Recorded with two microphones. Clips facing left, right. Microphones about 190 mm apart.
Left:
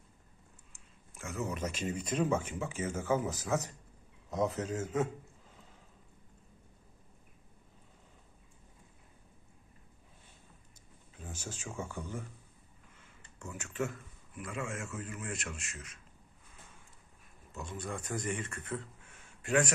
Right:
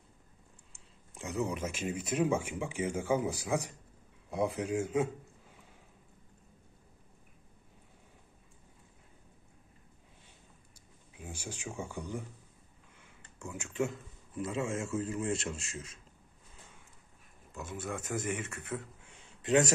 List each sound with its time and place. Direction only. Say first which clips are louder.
1.2 s speech: right 2 dB; 15° right (ahead or behind)
11.1 s speech: right 1 dB; 10° right (ahead or behind)
13.0 s a sound: right 2 dB; 10° right (ahead or behind)
14.3 s a man's voice: right 5 dB; 25° right (ahead or behind)
17.5 s speech: right 1 dB; 5° right (ahead or behind)